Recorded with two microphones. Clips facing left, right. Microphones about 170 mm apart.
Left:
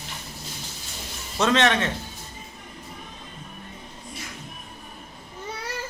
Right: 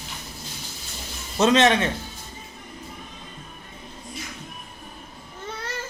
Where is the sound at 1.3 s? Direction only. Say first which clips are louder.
Right 3 dB; 20° right (ahead or behind).